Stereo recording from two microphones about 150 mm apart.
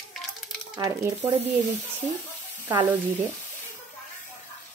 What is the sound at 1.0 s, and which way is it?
Speech, 20° right (ahead or behind).